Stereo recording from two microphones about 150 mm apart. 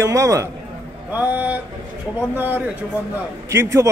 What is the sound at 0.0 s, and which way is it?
A man's voice, 20° right (ahead or behind).